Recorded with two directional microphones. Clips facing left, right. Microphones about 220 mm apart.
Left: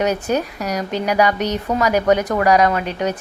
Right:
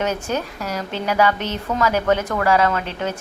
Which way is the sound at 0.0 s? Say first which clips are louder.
Left 4 dB; 15° left (ahead or behind).